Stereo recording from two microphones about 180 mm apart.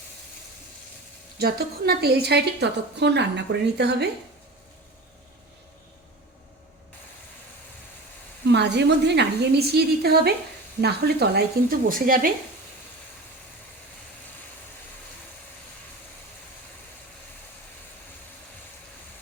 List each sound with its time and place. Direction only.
1.4 s a woman's voice: 60° right (ahead or behind)
8.5 s a woman's voice: 70° right (ahead or behind)
11.9 s a woman's voice: 50° right (ahead or behind)